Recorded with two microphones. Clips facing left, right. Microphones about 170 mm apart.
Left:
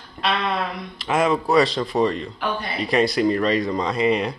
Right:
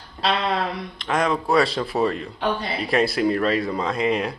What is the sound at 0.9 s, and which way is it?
Speech, 5° left (ahead or behind).